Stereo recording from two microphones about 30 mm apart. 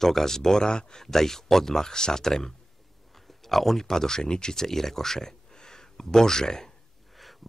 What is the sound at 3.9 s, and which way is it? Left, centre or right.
Speech, centre.